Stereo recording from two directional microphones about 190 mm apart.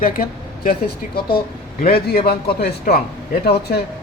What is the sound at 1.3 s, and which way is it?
A man's voice, 55° left (ahead or behind).